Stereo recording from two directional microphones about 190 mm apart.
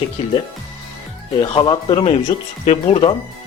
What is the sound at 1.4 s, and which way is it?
Speech, 25° left (ahead or behind).